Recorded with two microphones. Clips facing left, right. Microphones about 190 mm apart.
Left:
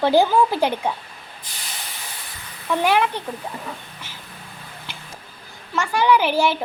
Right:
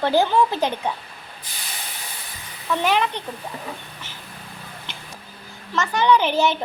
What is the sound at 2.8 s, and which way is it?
Speech, 10° left (ahead or behind).